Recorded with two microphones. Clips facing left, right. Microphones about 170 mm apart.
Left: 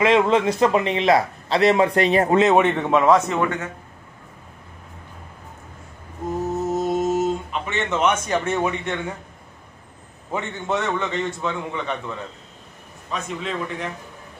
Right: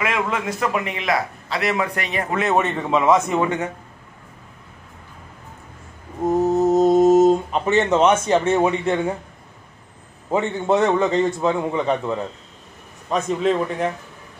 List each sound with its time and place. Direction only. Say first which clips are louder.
0.0 s a man's voice: left 7 dB; 25° left (ahead or behind)
2.4 s a man's voice: left 3 dB; 10° left (ahead or behind); by 3.6 s 15° right (ahead or behind)
6.5 s a sound: right 7 dB; 40° right (ahead or behind)
10.3 s a man's voice: right 6 dB; 40° right (ahead or behind)